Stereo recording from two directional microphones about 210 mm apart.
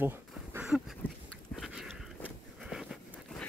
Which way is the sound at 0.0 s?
10° right (ahead or behind).